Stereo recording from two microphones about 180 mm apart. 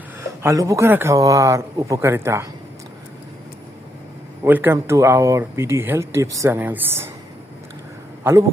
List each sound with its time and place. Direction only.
0.4 s speech: 15° right (ahead or behind)
4.4 s speech: 10° right (ahead or behind)
8.2 s speech: 15° right (ahead or behind)